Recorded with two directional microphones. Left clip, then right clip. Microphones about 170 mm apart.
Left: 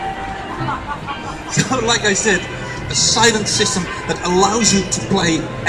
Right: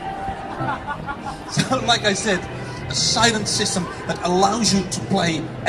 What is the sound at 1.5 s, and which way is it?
A man's voice, 55° right (ahead or behind).